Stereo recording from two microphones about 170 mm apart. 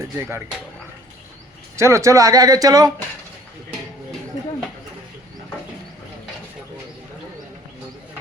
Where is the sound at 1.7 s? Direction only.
15° right (ahead or behind).